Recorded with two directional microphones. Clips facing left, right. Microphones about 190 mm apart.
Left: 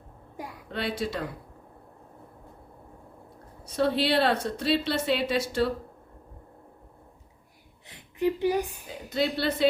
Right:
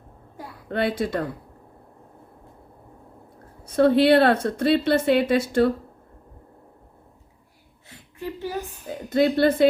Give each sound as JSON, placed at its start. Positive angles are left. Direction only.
{"t": 0.7, "sound": "speech", "side_deg": -55}
{"t": 3.7, "sound": "speech", "side_deg": -55}
{"t": 7.9, "sound": "speech", "side_deg": 15}
{"t": 8.9, "sound": "speech", "side_deg": -55}